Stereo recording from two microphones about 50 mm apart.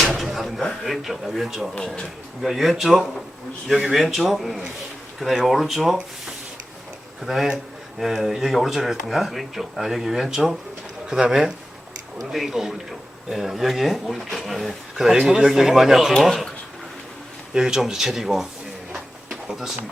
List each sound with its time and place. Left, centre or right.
0.2 s speech: centre
7.3 s speech: centre
17.5 s speech: centre
19.3 s a sound: centre